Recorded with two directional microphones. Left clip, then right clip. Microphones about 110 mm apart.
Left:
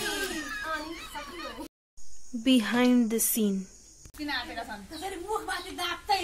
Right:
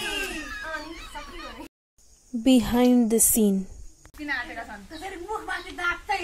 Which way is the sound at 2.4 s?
35° right (ahead or behind).